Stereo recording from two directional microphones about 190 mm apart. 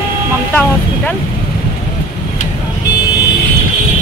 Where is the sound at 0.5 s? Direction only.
10° left (ahead or behind).